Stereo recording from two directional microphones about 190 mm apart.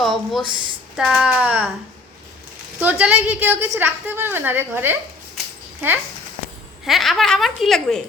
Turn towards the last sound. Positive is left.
turn(degrees=0)  # may be behind; listen again after turning